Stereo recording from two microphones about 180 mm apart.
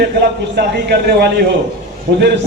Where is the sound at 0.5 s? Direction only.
65° right (ahead or behind).